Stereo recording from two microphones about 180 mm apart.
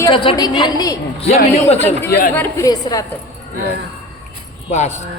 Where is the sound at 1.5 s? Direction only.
35° left (ahead or behind).